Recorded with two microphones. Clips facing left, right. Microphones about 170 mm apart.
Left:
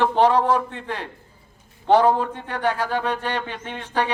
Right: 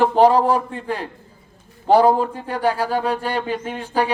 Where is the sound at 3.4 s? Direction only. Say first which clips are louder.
Right 8 dB; 35° right (ahead or behind).